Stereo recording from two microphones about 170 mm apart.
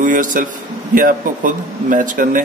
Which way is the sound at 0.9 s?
50° right (ahead or behind).